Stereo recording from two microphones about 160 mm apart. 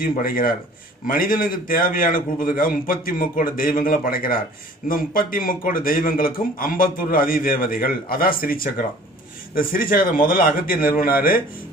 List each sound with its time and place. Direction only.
0.2 s speech: 60° left (ahead or behind)